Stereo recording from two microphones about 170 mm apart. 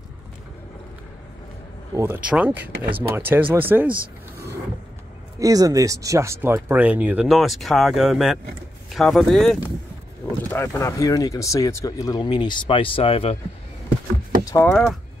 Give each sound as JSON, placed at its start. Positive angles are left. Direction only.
{"t": 2.0, "sound": "speech", "side_deg": -10}
{"t": 5.4, "sound": "speech", "side_deg": -20}
{"t": 10.5, "sound": "speech", "side_deg": 15}
{"t": 14.4, "sound": "a sound", "side_deg": 20}
{"t": 14.7, "sound": "speech", "side_deg": 5}